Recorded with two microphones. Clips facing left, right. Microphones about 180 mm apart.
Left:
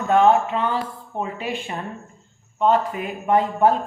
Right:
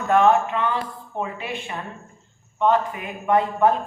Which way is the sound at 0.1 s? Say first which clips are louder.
Left 1 dB; 30° left (ahead or behind).